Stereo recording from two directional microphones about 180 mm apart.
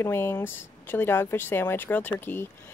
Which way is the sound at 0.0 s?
10° left (ahead or behind).